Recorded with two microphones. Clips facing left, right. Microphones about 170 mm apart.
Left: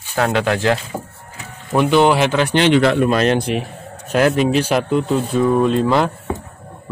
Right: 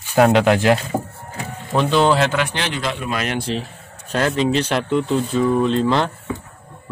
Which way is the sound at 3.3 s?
15° left (ahead or behind).